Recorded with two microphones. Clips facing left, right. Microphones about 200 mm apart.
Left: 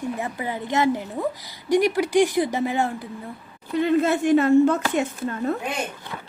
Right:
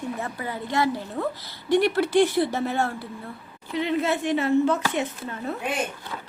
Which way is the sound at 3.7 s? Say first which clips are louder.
Left 4 dB; 45° left (ahead or behind).